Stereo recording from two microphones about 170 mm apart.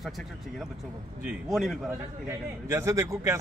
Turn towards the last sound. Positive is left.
turn(degrees=-15)  # may be behind; listen again after turning